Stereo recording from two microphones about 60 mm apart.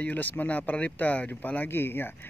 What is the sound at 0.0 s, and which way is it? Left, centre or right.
Speech, left.